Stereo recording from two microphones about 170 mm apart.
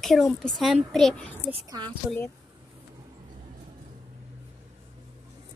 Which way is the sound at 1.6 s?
25° right (ahead or behind).